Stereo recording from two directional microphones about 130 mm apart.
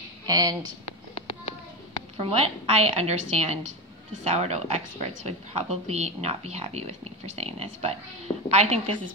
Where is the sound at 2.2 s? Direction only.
50° right (ahead or behind).